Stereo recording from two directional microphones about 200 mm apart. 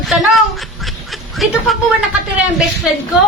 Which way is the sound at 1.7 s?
Centre (ahead or behind).